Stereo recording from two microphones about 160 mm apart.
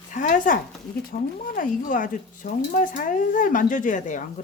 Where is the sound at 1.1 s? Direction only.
70° left (ahead or behind).